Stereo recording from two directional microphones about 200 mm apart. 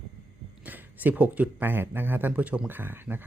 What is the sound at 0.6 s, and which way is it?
Speech, 10° right (ahead or behind).